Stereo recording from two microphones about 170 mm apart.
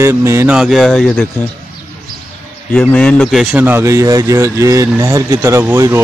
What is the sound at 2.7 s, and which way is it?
Speech, 5° left (ahead or behind).